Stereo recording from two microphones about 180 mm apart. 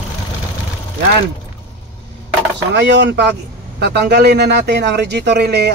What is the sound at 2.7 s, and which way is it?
Speech, 70° right (ahead or behind).